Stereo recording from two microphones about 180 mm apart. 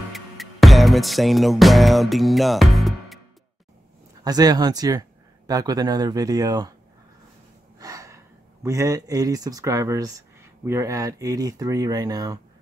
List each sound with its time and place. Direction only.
0.1 s music: centre (ahead or behind)
4.2 s speech: 20° right (ahead or behind)
7.8 s gasp: 20° right (ahead or behind)
8.6 s speech: 20° right (ahead or behind)